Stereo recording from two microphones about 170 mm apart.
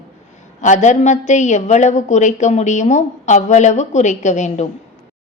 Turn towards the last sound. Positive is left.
turn(degrees=45)  # may be behind; listen again after turning